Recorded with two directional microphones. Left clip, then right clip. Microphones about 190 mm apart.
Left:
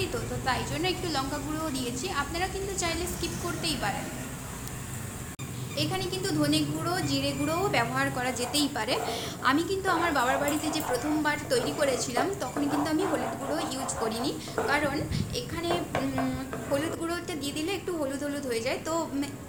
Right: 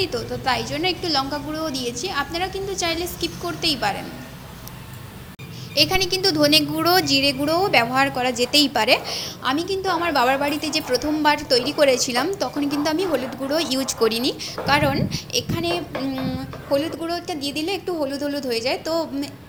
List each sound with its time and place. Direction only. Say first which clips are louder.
0.0 s a woman's voice: right 7 dB; 30° right (ahead or behind)
5.7 s a woman's voice: right 12 dB; 45° right (ahead or behind)
9.2 s a woman's voice: right 3 dB; 20° right (ahead or behind); by 15.7 s 35° right (ahead or behind)
16.7 s a woman's voice: right 8 dB; 20° right (ahead or behind)